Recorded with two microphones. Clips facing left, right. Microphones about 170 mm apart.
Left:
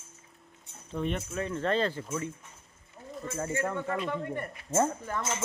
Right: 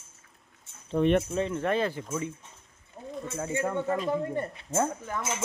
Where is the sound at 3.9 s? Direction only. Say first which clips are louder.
Right 4 dB; 35° right (ahead or behind).